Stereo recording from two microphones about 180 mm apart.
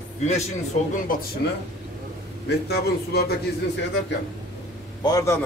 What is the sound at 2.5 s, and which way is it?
Speech, 60° left (ahead or behind).